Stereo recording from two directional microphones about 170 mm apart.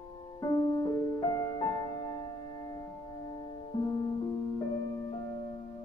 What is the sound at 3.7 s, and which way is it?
Music, 30° left (ahead or behind).